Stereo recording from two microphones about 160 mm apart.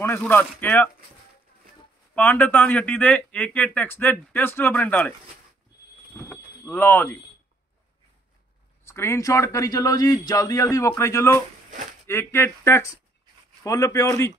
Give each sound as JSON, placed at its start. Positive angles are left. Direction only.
{"t": 0.0, "sound": "speech", "side_deg": 15}
{"t": 2.1, "sound": "speech", "side_deg": 10}
{"t": 6.1, "sound": "a sound", "side_deg": 15}
{"t": 8.8, "sound": "a man's voice", "side_deg": 15}